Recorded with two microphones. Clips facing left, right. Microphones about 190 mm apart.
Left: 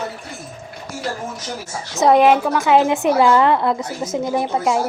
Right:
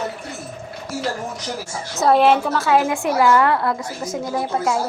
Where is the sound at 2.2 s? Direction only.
5° left (ahead or behind).